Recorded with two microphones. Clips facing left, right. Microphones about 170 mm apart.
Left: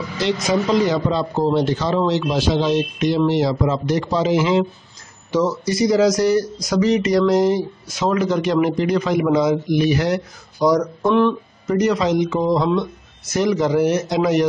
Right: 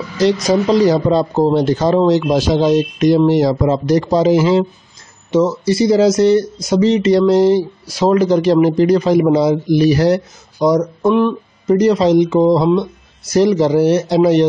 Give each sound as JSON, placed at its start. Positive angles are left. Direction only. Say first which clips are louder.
{"t": 0.2, "sound": "speech", "louder": "right 6 dB", "side_deg": -35}
{"t": 5.3, "sound": "speech", "louder": "right 5 dB", "side_deg": -25}
{"t": 10.6, "sound": "speech", "louder": "right 3 dB", "side_deg": -25}
{"t": 11.0, "sound": "speech", "louder": "right 3 dB", "side_deg": -10}
{"t": 11.6, "sound": "speech", "louder": "right 6 dB", "side_deg": -30}